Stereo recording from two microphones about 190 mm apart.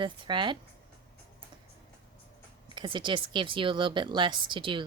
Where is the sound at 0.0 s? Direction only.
25° right (ahead or behind).